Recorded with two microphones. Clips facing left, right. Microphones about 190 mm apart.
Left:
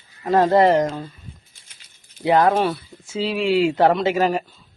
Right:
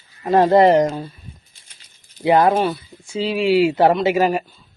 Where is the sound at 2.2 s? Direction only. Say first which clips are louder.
Right 2 dB; 15° right (ahead or behind).